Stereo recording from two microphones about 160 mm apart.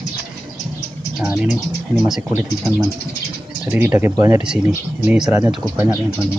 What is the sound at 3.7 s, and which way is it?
Speech, 15° right (ahead or behind).